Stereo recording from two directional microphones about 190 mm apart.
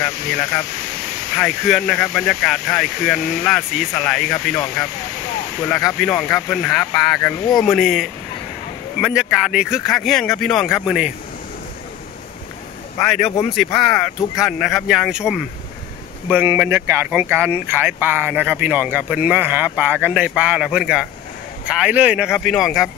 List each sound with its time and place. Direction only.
1.4 s speech: centre (ahead or behind)
5.7 s speech: centre (ahead or behind)
13.0 s speech: centre (ahead or behind)
13.3 s speech: 35° left (ahead or behind)
13.7 s speech: centre (ahead or behind)